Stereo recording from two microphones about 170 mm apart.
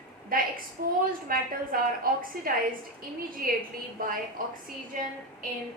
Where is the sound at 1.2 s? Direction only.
55° right (ahead or behind).